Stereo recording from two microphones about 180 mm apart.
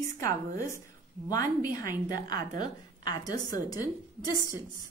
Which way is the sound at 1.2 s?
20° left (ahead or behind).